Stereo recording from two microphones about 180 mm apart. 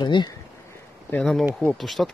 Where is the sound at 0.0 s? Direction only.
25° left (ahead or behind).